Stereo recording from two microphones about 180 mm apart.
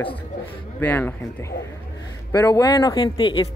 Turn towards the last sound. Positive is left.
turn(degrees=25)  # may be behind; listen again after turning